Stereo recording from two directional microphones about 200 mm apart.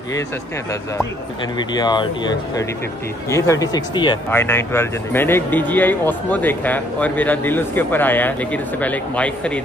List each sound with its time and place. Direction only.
1.6 s speech: 20° left (ahead or behind)
4.3 s speech: 10° left (ahead or behind)